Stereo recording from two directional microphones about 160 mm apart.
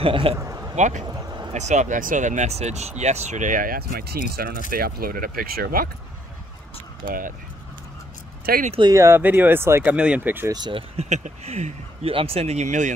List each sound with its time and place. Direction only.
0.0 s speech: 35° right (ahead or behind)
0.7 s speech: 50° right (ahead or behind); by 5.9 s 65° right (ahead or behind)
7.1 s speech: 60° right (ahead or behind)
8.7 s speech: 25° right (ahead or behind)
10.5 s speech: 25° right (ahead or behind)
11.0 s speech: 45° right (ahead or behind)